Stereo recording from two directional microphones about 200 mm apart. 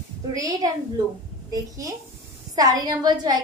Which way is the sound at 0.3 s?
15° right (ahead or behind).